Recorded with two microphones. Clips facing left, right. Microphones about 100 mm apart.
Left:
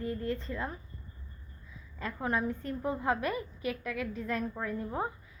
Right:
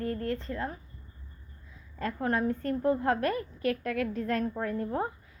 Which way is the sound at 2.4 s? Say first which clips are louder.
Right 6 dB; 60° right (ahead or behind).